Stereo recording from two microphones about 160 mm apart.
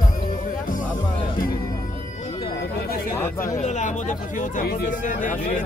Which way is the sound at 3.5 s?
45° left (ahead or behind).